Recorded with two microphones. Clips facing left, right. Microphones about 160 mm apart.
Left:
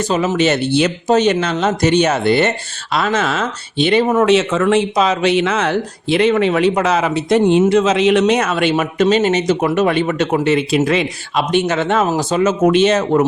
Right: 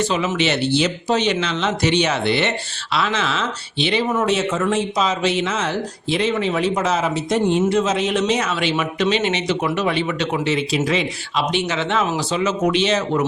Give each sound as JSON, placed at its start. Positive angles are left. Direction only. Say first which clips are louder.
{"t": 0.0, "sound": "speech", "louder": "left 4 dB", "side_deg": 40}